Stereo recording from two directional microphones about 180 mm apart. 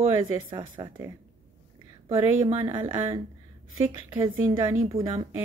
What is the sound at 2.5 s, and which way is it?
Speech, 30° right (ahead or behind).